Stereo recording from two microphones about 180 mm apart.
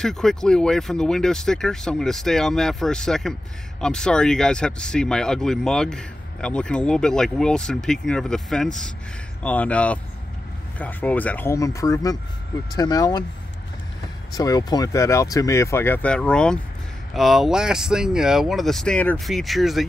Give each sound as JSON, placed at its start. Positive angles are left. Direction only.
{"t": 0.0, "sound": "speech", "side_deg": 5}
{"t": 14.3, "sound": "speech", "side_deg": 20}